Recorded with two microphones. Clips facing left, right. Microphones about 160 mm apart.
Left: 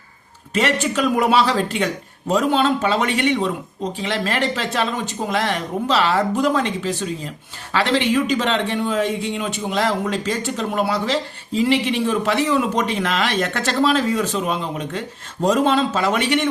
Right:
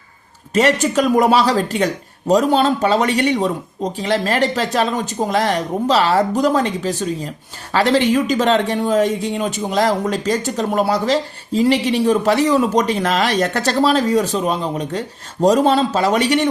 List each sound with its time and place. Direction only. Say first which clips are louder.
0.5 s speech: right 5 dB; 40° right (ahead or behind)